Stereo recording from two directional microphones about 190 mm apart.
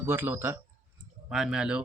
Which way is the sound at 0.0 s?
10° right (ahead or behind).